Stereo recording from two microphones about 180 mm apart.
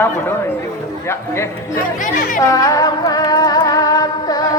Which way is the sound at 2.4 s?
20° left (ahead or behind).